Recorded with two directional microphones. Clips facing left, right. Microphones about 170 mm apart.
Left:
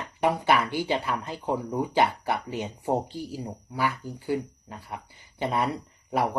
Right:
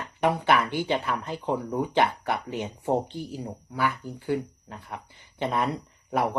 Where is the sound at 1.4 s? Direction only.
5° left (ahead or behind).